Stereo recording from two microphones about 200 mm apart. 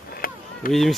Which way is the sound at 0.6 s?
45° left (ahead or behind).